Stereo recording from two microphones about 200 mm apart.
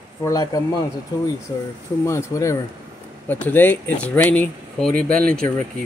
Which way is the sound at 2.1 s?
15° left (ahead or behind).